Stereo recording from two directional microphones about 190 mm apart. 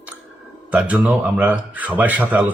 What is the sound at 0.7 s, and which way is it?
Speech, 5° right (ahead or behind).